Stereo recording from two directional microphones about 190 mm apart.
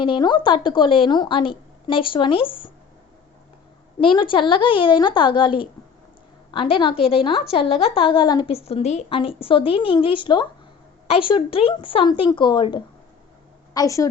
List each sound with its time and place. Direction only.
0.0 s a woman's voice: 25° left (ahead or behind)
4.0 s a woman's voice: 25° left (ahead or behind)